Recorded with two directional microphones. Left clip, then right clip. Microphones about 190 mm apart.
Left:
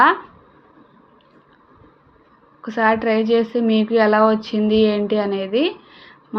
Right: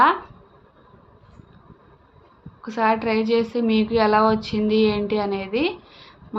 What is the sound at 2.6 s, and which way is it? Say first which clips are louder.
A woman's voice: left 3 dB; 15° left (ahead or behind).